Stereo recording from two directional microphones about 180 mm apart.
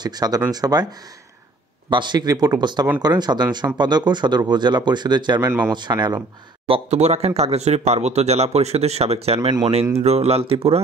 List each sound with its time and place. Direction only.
0.0 s speech: 20° right (ahead or behind)
1.9 s speech: 25° right (ahead or behind)
6.7 s speech: 40° right (ahead or behind)